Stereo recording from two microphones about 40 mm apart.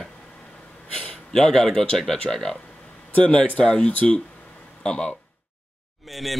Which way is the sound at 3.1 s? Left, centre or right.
Left.